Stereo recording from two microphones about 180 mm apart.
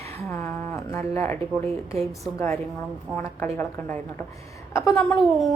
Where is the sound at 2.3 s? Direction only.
15° left (ahead or behind).